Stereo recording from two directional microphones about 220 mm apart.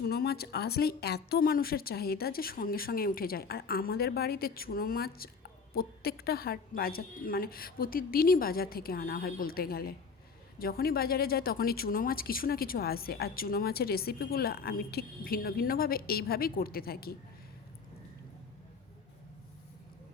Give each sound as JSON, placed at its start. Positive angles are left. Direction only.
{"t": 0.0, "sound": "a woman's voice", "side_deg": 45}